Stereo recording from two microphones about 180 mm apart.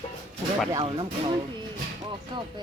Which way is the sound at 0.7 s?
30° right (ahead or behind).